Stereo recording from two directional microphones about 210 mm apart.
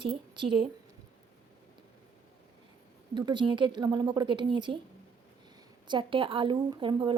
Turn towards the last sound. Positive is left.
turn(degrees=-25)  # may be behind; listen again after turning